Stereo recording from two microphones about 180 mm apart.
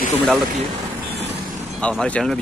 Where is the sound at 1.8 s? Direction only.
5° left (ahead or behind).